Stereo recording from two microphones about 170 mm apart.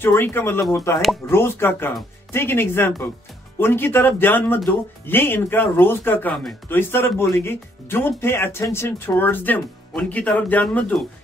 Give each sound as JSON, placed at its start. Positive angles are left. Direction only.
{"t": 0.0, "sound": "speech", "side_deg": 15}